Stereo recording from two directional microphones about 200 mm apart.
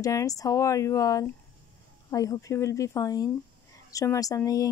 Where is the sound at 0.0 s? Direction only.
15° left (ahead or behind).